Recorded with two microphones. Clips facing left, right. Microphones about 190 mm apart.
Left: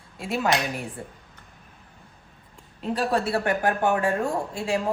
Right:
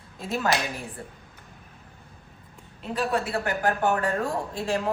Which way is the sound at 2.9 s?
30° left (ahead or behind).